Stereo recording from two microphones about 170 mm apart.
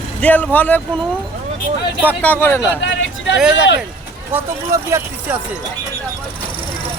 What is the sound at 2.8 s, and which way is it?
Vehicle, 90° left.